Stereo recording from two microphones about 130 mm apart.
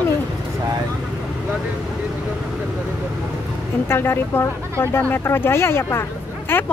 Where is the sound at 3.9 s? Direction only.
20° left (ahead or behind).